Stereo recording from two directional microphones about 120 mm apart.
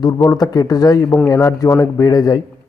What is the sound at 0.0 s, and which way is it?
A man's voice, 30° left (ahead or behind).